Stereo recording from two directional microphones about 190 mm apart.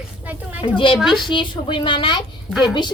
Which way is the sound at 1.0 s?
Centre (ahead or behind).